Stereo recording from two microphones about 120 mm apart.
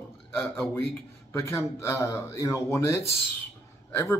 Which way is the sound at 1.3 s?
25° left (ahead or behind).